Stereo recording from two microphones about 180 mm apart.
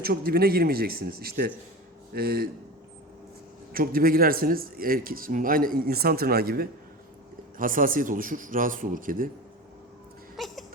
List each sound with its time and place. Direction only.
0.1 s speech: 55° right (ahead or behind)
3.7 s a man's voice: 55° right (ahead or behind)
10.3 s a sound: centre (ahead or behind)